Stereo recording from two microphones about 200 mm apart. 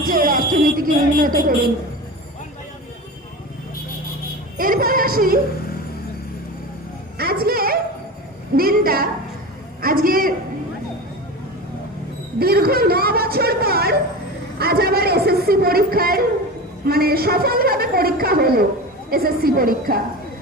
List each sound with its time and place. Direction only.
0.0 s speech: 45° right (ahead or behind)
4.5 s a woman's voice: 45° right (ahead or behind)
7.2 s a woman's voice: 50° right (ahead or behind)
12.4 s speech: 50° right (ahead or behind)
14.6 s a sound: 50° right (ahead or behind)
16.8 s a woman's voice: 50° right (ahead or behind)